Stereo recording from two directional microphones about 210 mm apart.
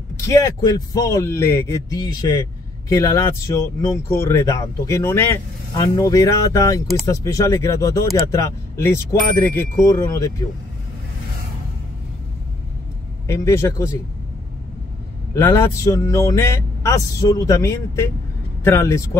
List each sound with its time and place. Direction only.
0.3 s speech: 20° left (ahead or behind)
13.3 s speech: 15° left (ahead or behind)
15.3 s speech: 15° left (ahead or behind)